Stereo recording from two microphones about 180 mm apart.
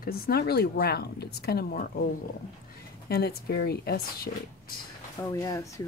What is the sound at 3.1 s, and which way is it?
Speech, 60° left (ahead or behind).